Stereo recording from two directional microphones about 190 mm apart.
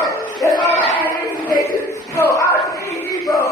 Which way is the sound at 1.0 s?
15° left (ahead or behind).